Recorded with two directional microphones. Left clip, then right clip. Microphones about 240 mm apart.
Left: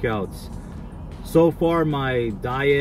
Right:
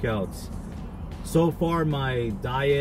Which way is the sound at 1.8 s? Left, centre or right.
Centre.